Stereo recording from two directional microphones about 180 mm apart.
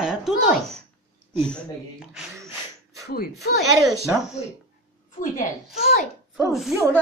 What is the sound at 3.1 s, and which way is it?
Speech, 60° left (ahead or behind).